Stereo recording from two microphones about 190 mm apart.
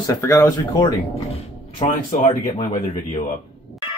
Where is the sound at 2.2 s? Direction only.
20° left (ahead or behind).